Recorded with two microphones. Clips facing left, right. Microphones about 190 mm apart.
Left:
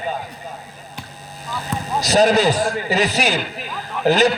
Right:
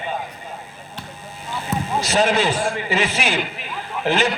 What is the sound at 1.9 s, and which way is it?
A man's voice, 40° left (ahead or behind).